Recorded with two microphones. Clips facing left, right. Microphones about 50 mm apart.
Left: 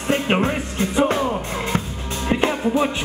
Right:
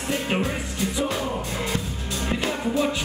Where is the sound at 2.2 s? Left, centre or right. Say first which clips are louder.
Left 6 dB; left.